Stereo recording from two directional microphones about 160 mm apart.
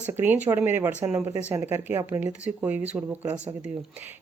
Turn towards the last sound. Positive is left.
turn(degrees=-10)  # may be behind; listen again after turning